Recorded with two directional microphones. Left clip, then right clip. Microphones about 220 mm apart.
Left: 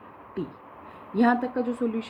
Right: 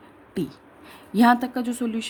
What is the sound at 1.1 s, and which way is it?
Speech, 65° right (ahead or behind).